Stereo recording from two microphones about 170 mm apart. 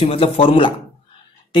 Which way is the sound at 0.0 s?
35° left (ahead or behind).